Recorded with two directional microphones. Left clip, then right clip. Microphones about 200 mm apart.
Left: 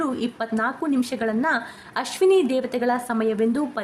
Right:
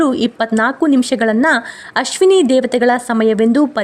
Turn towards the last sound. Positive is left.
turn(degrees=-40)  # may be behind; listen again after turning